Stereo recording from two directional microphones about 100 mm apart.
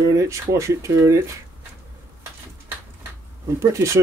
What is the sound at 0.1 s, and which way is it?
Speech, 30° right (ahead or behind).